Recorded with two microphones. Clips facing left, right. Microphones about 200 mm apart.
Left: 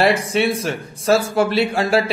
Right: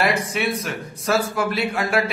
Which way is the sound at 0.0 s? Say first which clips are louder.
Left 5 dB; 30° left (ahead or behind).